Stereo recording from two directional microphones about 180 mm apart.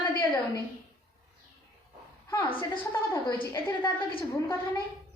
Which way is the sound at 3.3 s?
25° left (ahead or behind).